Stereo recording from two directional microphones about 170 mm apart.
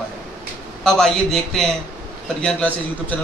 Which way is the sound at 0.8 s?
5° left (ahead or behind).